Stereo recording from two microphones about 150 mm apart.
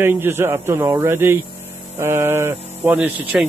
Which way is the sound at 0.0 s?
15° right (ahead or behind).